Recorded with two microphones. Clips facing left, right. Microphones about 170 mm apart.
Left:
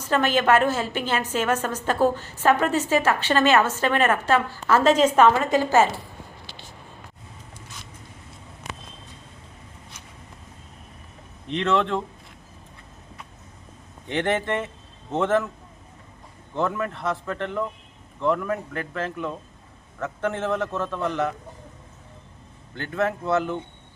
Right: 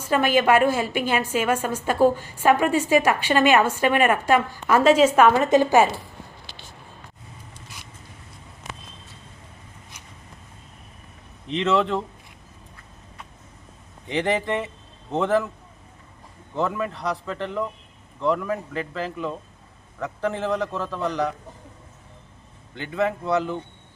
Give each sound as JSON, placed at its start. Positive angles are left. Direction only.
{"t": 0.0, "sound": "a woman's voice", "side_deg": -10}
{"t": 5.4, "sound": "a woman's voice", "side_deg": -20}
{"t": 11.4, "sound": "a man's voice", "side_deg": 0}
{"t": 14.1, "sound": "a man's voice", "side_deg": 0}
{"t": 16.6, "sound": "a man's voice", "side_deg": 0}
{"t": 22.7, "sound": "a man's voice", "side_deg": 0}